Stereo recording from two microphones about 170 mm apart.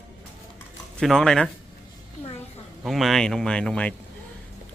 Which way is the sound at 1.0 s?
Centre (ahead or behind).